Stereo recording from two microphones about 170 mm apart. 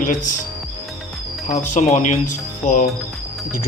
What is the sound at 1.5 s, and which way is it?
Speech, 45° left (ahead or behind).